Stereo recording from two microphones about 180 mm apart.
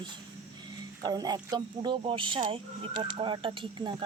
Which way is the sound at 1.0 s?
25° right (ahead or behind).